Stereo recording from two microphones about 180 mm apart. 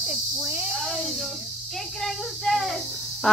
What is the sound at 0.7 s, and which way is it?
Speech, centre (ahead or behind).